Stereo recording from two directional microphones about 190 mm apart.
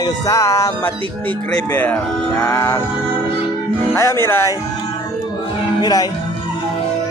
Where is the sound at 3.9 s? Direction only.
15° left (ahead or behind).